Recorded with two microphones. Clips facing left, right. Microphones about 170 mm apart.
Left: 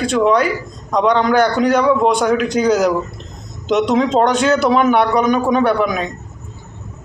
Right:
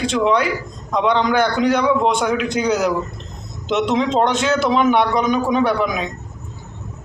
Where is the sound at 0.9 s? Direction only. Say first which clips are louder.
Left 3 dB; 45° left (ahead or behind).